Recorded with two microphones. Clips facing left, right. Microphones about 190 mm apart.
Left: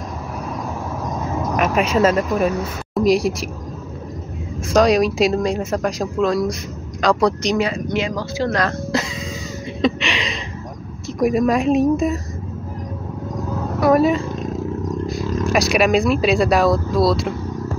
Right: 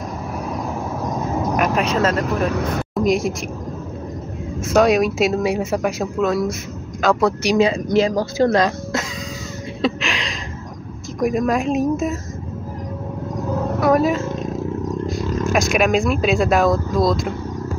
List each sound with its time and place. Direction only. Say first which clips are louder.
1.6 s speech: left 3 dB; 5° left (ahead or behind)
4.7 s speech: even; 5° right (ahead or behind)
7.5 s speech: right 4 dB; 25° right (ahead or behind)
7.9 s speech: right 5 dB; 40° right (ahead or behind)
8.9 s speech: left 6 dB; centre (ahead or behind)
9.8 s a sound: left 2 dB; 5° right (ahead or behind)
11.1 s speech: left 2 dB; centre (ahead or behind)
13.7 s speech: left 2 dB; centre (ahead or behind)
15.0 s a sound: left 1 dB; centre (ahead or behind)
15.7 s speech: left 3 dB; centre (ahead or behind)